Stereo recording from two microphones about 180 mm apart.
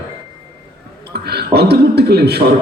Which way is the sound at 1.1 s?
65° right (ahead or behind).